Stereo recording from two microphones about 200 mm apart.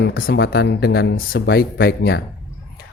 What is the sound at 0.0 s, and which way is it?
Speech, 45° left (ahead or behind).